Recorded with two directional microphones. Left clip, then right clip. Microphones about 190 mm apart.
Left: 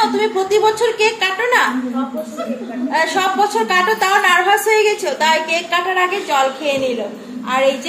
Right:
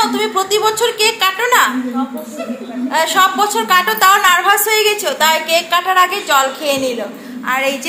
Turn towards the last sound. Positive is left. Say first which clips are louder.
# left 1 dB
turn(degrees=0)  # may be behind; listen again after turning